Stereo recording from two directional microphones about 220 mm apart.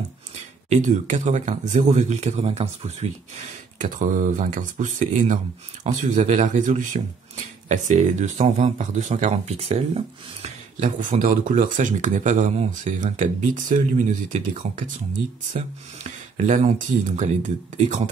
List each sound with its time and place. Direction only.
0.7 s speech: 35° right (ahead or behind)